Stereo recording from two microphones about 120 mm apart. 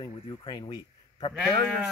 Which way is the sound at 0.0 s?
40° left (ahead or behind).